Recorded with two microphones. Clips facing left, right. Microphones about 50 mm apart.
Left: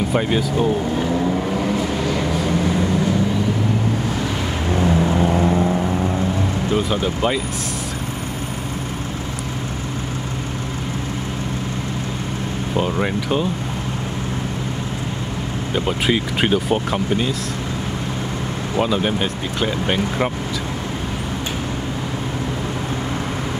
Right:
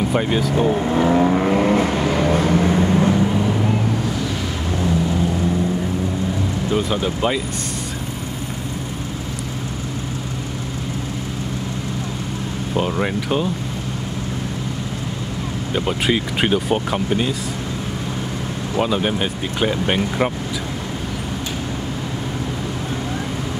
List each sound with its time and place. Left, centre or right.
0.1 s speech: centre
0.9 s vehicle: right
4.6 s vehicle: left
6.7 s speech: centre
12.7 s speech: centre
15.7 s speech: centre
18.8 s speech: centre